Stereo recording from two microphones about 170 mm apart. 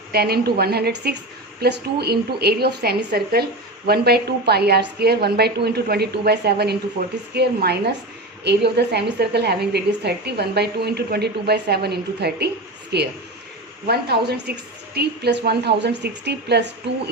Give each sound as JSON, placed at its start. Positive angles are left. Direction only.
{"t": 0.1, "sound": "a woman's voice", "side_deg": -70}